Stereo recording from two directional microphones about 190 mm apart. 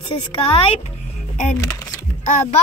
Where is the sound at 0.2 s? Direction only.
30° left (ahead or behind).